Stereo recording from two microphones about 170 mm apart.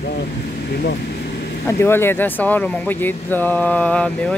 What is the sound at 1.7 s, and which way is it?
Speech, 15° left (ahead or behind).